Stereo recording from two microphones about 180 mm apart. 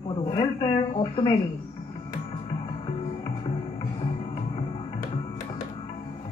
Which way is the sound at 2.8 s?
30° left (ahead or behind).